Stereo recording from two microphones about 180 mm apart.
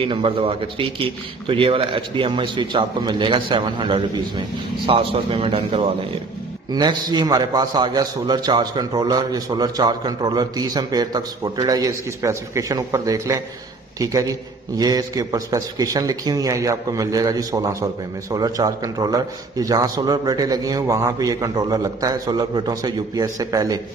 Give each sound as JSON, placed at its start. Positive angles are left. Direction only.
{"t": 0.0, "sound": "a man's voice", "side_deg": -30}